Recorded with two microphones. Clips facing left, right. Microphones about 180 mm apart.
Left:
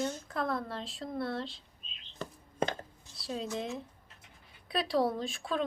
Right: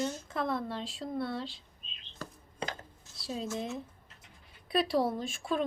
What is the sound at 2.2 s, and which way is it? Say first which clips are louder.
Speech: left 3 dB; 20° left (ahead or behind).